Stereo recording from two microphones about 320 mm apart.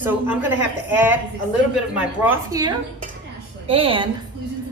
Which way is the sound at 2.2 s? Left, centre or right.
Centre.